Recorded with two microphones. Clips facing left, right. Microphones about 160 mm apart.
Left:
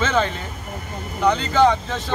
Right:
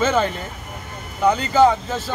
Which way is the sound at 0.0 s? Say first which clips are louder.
Right 2 dB; 10° right (ahead or behind).